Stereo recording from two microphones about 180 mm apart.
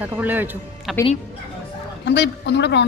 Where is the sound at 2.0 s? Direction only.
70° left (ahead or behind).